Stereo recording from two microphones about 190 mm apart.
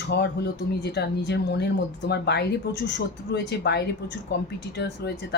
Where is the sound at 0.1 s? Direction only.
60° left (ahead or behind).